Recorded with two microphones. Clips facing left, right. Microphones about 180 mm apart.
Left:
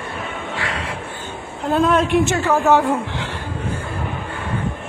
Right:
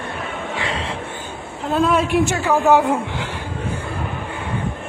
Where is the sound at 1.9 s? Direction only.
10° right (ahead or behind).